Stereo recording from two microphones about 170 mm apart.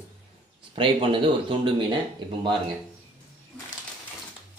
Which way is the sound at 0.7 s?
30° right (ahead or behind).